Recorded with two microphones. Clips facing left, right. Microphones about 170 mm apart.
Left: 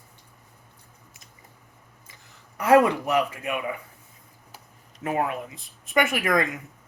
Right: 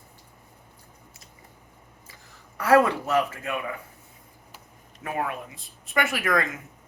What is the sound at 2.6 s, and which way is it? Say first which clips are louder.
Speech: left 1 dB; 20° left (ahead or behind).